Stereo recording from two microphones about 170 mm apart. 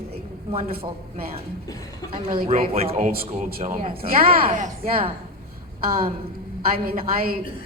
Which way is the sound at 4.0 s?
60° right (ahead or behind).